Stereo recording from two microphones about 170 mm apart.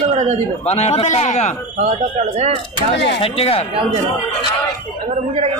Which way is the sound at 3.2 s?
35° left (ahead or behind).